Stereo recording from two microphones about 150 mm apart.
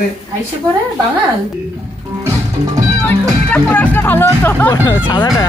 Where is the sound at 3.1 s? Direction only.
10° left (ahead or behind).